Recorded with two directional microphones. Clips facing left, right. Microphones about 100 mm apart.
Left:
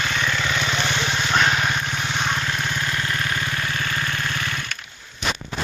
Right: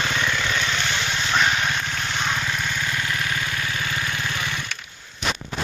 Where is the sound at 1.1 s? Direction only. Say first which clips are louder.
Left 2 dB; 20° left (ahead or behind).